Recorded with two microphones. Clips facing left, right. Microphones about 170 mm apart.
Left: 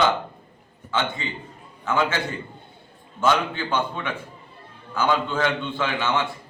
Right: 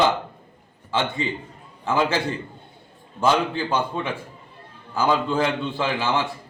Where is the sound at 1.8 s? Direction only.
30° right (ahead or behind).